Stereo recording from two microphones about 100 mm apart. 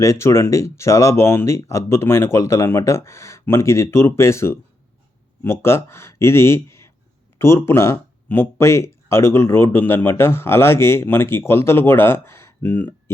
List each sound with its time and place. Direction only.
0.0 s speech: 30° left (ahead or behind)